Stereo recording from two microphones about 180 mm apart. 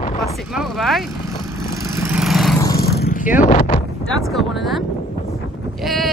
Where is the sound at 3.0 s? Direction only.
50° left (ahead or behind).